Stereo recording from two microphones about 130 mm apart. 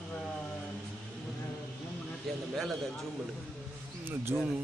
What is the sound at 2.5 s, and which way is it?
Speech, centre (ahead or behind).